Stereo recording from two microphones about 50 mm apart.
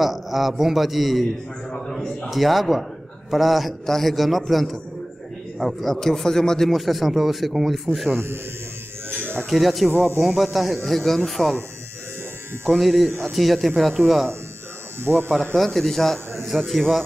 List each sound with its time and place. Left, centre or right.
0.0 s a man's voice: centre
6.7 s a man's voice: centre
9.2 s music: right
9.5 s a man's voice: centre
12.6 s a man's voice: centre
15.0 s speech: right
15.5 s a man's voice: centre